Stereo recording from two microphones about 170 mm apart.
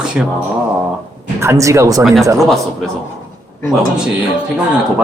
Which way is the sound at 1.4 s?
15° right (ahead or behind).